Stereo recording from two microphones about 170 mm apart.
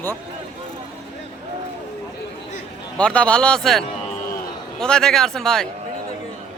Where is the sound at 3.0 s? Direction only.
5° left (ahead or behind).